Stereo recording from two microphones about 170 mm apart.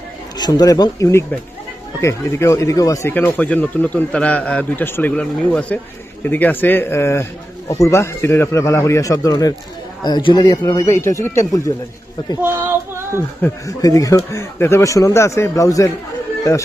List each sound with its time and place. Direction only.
0.3 s speech: 25° left (ahead or behind)
12.9 s a sound: 15° right (ahead or behind)
13.4 s speech: 20° left (ahead or behind)